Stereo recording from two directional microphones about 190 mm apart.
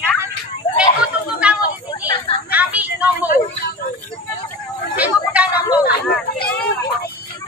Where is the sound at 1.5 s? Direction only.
5° right (ahead or behind).